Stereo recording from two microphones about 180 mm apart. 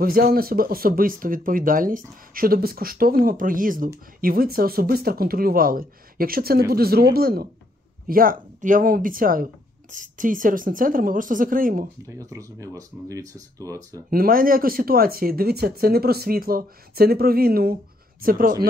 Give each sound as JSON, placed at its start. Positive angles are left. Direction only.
{"t": 0.0, "sound": "speech", "side_deg": -55}
{"t": 12.1, "sound": "speech", "side_deg": -15}
{"t": 14.1, "sound": "speech", "side_deg": -55}